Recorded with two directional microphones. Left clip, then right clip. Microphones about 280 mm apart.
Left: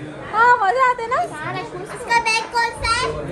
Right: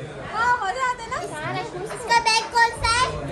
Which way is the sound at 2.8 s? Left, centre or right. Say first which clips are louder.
Left 1 dB; right.